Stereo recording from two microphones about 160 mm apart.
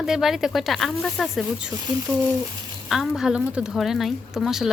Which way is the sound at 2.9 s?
Centre (ahead or behind).